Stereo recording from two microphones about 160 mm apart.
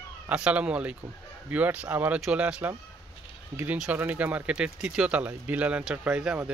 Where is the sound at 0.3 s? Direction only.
10° right (ahead or behind).